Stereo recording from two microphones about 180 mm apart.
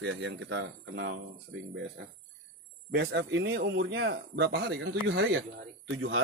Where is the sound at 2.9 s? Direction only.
70° right (ahead or behind).